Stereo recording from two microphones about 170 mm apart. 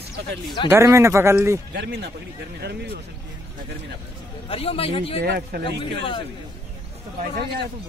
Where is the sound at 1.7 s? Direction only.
75° right (ahead or behind).